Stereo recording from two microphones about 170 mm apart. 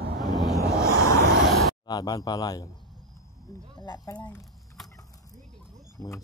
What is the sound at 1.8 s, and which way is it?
Speech, 25° left (ahead or behind).